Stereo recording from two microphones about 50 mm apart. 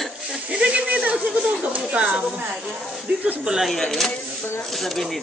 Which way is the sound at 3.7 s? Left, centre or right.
Centre.